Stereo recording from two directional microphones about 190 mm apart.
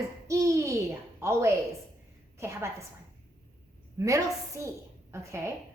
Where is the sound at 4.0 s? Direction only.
15° right (ahead or behind).